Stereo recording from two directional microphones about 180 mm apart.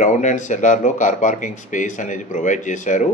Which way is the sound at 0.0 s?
45° left (ahead or behind).